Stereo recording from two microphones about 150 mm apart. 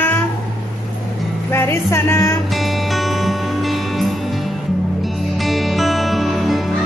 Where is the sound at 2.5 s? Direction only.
Centre (ahead or behind).